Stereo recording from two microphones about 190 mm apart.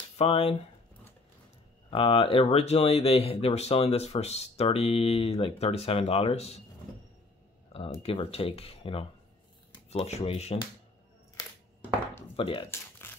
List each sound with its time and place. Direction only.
0.2 s speech: 30° left (ahead or behind)
1.9 s speech: 30° left (ahead or behind)
8.0 s speech: 30° left (ahead or behind)
12.4 s speech: 25° left (ahead or behind)
13.0 s a sound: 10° left (ahead or behind)